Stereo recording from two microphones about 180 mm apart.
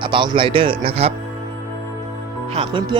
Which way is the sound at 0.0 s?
25° right (ahead or behind).